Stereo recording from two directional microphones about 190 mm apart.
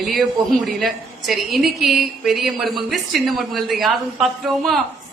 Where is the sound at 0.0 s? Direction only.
Centre (ahead or behind).